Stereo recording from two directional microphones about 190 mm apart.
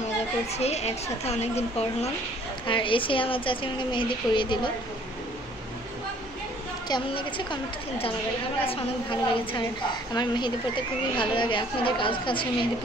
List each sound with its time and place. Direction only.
0.5 s a woman's voice: 35° left (ahead or behind)
6.9 s a woman's voice: 25° left (ahead or behind)
8.6 s a woman's voice: 25° left (ahead or behind)